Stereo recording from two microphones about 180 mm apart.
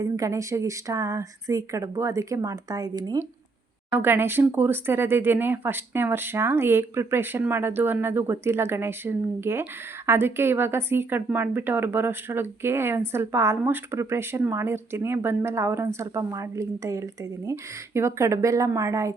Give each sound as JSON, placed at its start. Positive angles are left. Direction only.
{"t": 0.0, "sound": "a woman's voice", "side_deg": -15}